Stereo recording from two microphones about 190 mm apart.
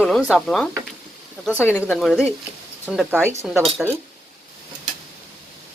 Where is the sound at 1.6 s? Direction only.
10° left (ahead or behind).